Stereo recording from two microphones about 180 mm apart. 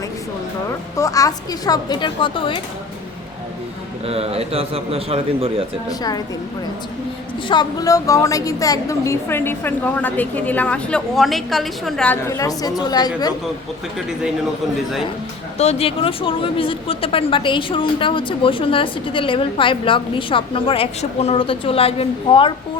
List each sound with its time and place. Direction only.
0.9 s speech: 20° left (ahead or behind)
4.0 s a man's voice: 35° right (ahead or behind)
5.9 s speech: 20° left (ahead or behind)
7.4 s a woman's voice: 25° left (ahead or behind)
15.5 s speech: 35° left (ahead or behind)